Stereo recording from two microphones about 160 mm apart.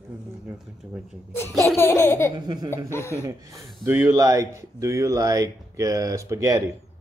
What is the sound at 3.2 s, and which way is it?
Speech, 20° right (ahead or behind).